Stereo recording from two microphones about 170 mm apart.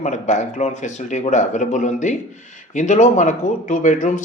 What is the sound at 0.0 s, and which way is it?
Speech, 45° left (ahead or behind).